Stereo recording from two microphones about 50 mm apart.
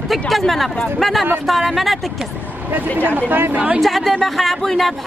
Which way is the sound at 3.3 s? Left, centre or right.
Right.